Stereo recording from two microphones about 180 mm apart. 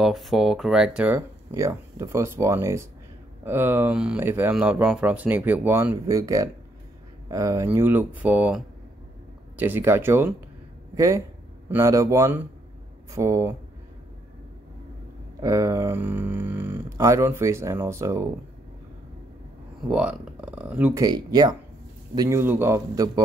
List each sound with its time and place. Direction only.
0.0 s speech: centre (ahead or behind); by 13.6 s 15° right (ahead or behind)
15.4 s speech: 20° right (ahead or behind)
19.9 s speech: 5° right (ahead or behind)
21.0 s speech: 20° right (ahead or behind)